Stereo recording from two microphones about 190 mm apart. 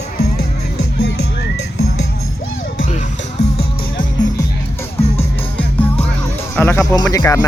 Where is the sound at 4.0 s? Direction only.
20° left (ahead or behind).